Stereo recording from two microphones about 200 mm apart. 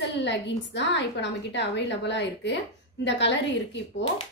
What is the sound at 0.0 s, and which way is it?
A woman's voice, 60° left (ahead or behind).